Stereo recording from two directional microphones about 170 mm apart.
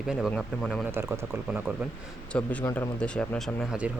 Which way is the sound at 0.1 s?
Centre (ahead or behind).